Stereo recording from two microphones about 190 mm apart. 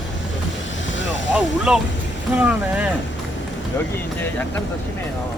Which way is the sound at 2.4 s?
5° right (ahead or behind).